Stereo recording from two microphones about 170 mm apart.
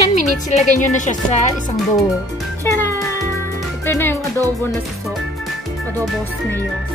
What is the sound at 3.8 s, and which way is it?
Speech, 15° left (ahead or behind).